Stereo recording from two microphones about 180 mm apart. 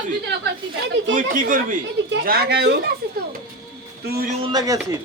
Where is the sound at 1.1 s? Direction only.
50° right (ahead or behind).